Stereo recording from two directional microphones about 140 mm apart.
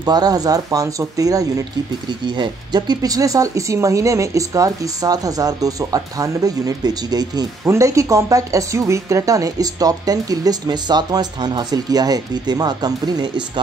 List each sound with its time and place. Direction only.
0.0 s speech: 30° right (ahead or behind)